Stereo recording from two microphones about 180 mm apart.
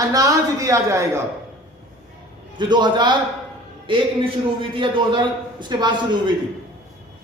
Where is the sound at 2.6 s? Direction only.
25° right (ahead or behind).